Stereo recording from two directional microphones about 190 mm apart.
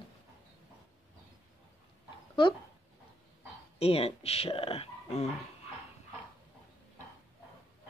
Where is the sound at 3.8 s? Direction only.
30° left (ahead or behind).